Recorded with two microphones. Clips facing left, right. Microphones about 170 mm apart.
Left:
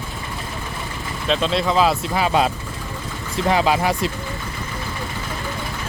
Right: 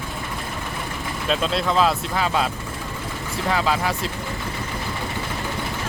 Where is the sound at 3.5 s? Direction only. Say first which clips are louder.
Left 4 dB; 20° left (ahead or behind).